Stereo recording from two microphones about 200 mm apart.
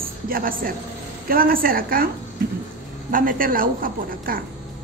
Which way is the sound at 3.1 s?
45° right (ahead or behind).